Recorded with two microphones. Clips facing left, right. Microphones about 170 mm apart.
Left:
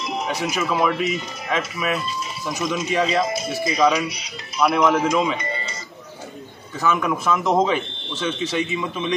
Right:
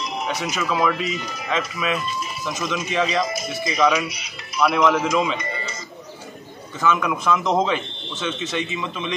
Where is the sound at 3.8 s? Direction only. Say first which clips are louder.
Even; 5° right (ahead or behind).